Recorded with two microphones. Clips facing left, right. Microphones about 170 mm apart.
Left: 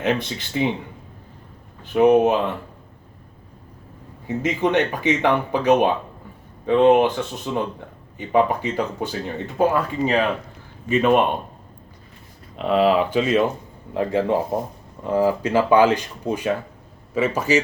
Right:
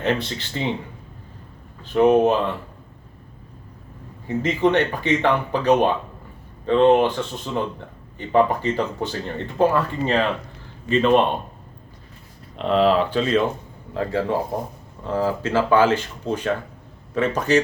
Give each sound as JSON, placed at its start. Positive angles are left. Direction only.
{"t": 0.0, "sound": "speech", "side_deg": 15}
{"t": 1.8, "sound": "speech", "side_deg": 15}
{"t": 4.4, "sound": "speech", "side_deg": 15}
{"t": 12.5, "sound": "a man's voice", "side_deg": 5}